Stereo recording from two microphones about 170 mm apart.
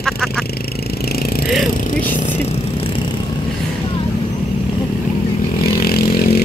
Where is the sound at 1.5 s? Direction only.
Centre (ahead or behind).